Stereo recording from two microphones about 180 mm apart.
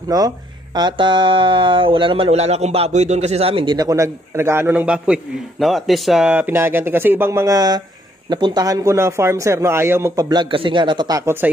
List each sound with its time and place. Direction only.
0.1 s a man's voice: 20° right (ahead or behind)